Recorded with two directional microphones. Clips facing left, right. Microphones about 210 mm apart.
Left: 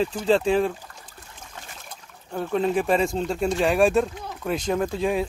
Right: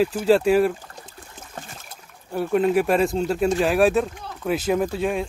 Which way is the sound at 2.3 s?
5° right (ahead or behind).